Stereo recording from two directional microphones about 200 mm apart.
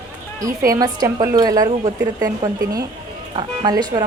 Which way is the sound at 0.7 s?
15° right (ahead or behind).